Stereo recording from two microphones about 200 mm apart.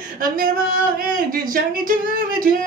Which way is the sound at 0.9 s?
45° right (ahead or behind).